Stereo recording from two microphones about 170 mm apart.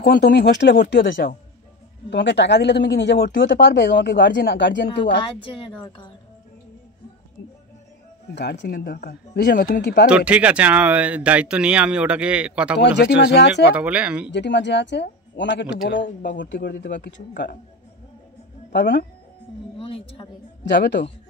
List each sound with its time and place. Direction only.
0.0 s speech: 70° left (ahead or behind)
2.0 s speech: 90° left
5.2 s a woman's voice: 30° left (ahead or behind)
8.4 s speech: 85° left
10.0 s speech: 5° right (ahead or behind)
12.7 s speech: 80° left
13.7 s speech: 5° right (ahead or behind)
14.3 s speech: 90° left
16.5 s speech: 55° left (ahead or behind)
18.7 s speech: 90° left
19.8 s a woman's voice: 30° left (ahead or behind)
20.7 s speech: 85° left